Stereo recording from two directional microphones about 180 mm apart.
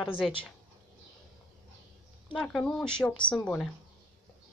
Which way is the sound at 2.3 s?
5° left (ahead or behind).